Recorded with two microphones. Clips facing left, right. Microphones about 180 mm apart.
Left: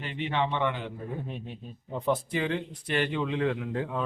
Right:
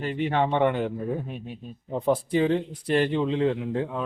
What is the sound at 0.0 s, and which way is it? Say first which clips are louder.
Speech: right 5 dB; 45° right (ahead or behind).